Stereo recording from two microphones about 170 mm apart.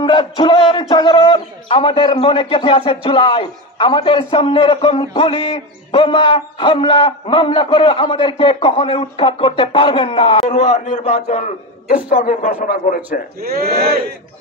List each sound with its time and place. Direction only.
0.0 s a man's voice: 30° left (ahead or behind)
10.5 s a man's voice: 45° left (ahead or behind)
13.4 s speech: 65° right (ahead or behind)